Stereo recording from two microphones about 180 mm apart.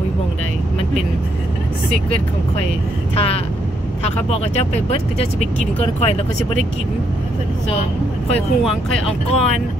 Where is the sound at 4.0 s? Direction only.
40° left (ahead or behind).